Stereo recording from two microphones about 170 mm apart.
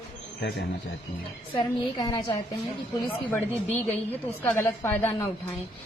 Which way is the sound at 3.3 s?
10° left (ahead or behind).